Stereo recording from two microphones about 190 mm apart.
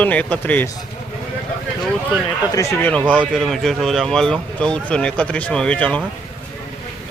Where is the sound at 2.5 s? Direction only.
15° left (ahead or behind).